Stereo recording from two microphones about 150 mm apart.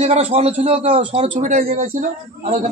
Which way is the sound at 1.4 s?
60° right (ahead or behind).